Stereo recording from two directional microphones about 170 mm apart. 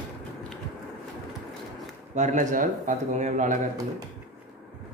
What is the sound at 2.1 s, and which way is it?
Speech, 45° right (ahead or behind).